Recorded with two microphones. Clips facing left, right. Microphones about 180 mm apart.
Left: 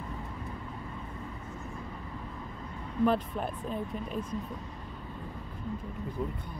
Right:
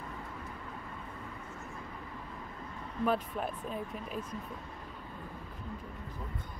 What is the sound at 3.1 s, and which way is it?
Speech, centre (ahead or behind).